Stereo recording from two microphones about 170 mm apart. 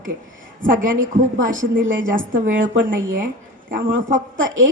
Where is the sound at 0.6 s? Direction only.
50° right (ahead or behind).